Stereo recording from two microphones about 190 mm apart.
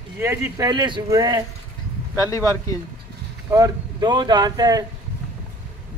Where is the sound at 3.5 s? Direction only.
20° right (ahead or behind).